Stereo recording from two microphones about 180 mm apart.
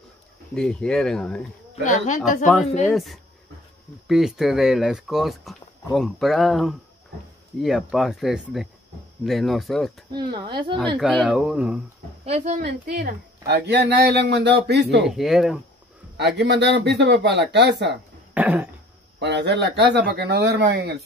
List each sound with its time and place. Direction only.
0.6 s speech: 5° left (ahead or behind)
1.9 s a woman's voice: 45° left (ahead or behind)
2.4 s speech: centre (ahead or behind)
10.1 s speech: 25° right (ahead or behind)
11.0 s speech: centre (ahead or behind)
12.3 s speech: 40° right (ahead or behind)
12.6 s speech: 60° right (ahead or behind)
15.0 s speech: centre (ahead or behind)
16.2 s speech: 70° right (ahead or behind)
18.3 s cough: 10° right (ahead or behind)
19.1 s speech: 75° right (ahead or behind)